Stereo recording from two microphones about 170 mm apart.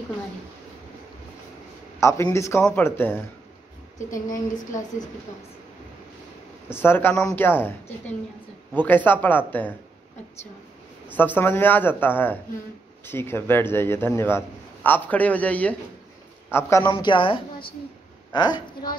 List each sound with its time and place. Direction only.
2.0 s a man's voice: 15° left (ahead or behind)
4.1 s a woman's voice: 50° left (ahead or behind)
6.7 s a man's voice: 15° left (ahead or behind)
8.8 s a man's voice: 10° left (ahead or behind)
11.1 s a man's voice: 10° left (ahead or behind)
16.9 s a woman's voice: 30° left (ahead or behind)